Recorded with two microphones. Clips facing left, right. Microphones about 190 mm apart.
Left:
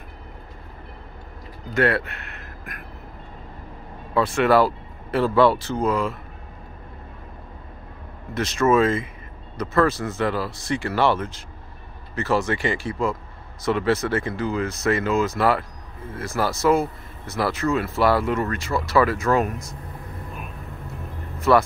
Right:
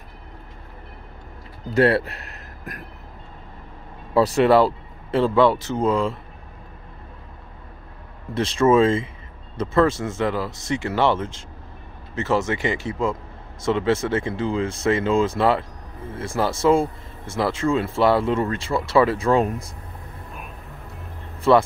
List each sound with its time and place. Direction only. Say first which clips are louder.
1.7 s speech: right 3 dB; 35° right (ahead or behind)
4.1 s speech: right 4 dB; 35° right (ahead or behind)
4.5 s speech: right 2 dB; 25° right (ahead or behind)
8.4 s speech: right 2 dB; 30° right (ahead or behind)
21.4 s speech: right 2 dB; 25° right (ahead or behind)